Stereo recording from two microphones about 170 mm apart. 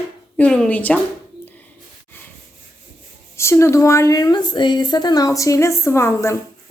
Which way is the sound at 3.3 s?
15° left (ahead or behind).